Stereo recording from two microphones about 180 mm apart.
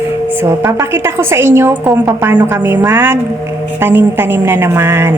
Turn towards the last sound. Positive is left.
turn(degrees=-15)  # may be behind; listen again after turning